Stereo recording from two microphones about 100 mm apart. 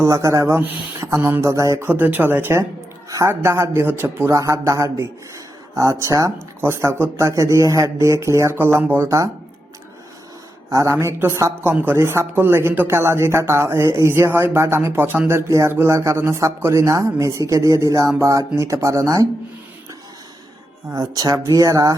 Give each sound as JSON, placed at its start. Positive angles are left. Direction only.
{"t": 0.0, "sound": "speech", "side_deg": -30}
{"t": 10.7, "sound": "speech", "side_deg": -30}
{"t": 11.7, "sound": "speech", "side_deg": -20}
{"t": 20.9, "sound": "speech", "side_deg": -35}